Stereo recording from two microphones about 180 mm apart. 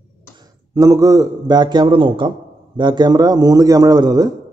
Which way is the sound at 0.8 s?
20° right (ahead or behind).